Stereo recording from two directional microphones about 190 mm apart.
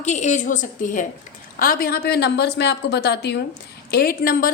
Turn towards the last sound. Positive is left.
turn(degrees=50)  # may be behind; listen again after turning